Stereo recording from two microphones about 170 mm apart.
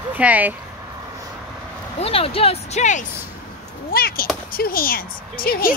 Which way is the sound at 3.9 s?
60° left (ahead or behind).